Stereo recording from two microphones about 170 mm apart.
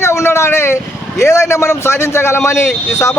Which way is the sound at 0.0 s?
15° left (ahead or behind).